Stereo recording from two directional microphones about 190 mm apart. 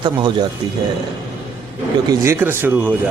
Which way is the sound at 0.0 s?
25° right (ahead or behind).